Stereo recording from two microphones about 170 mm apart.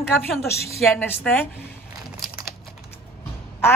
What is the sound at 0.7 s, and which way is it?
Speech, centre (ahead or behind).